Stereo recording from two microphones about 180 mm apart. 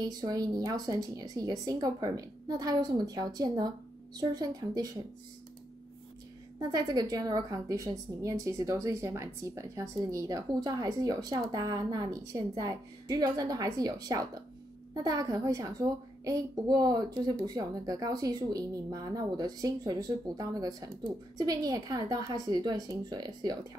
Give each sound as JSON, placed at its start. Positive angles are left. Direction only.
{"t": 0.0, "sound": "a woman's voice", "side_deg": -20}
{"t": 6.6, "sound": "a woman's voice", "side_deg": -20}